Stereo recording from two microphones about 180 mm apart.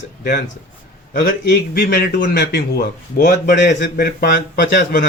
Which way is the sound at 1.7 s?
50° left (ahead or behind).